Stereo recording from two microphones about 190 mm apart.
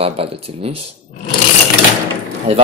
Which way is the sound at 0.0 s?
30° right (ahead or behind).